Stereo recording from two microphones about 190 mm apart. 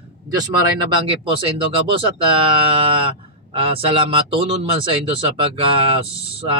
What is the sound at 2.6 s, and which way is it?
Speech, 30° right (ahead or behind).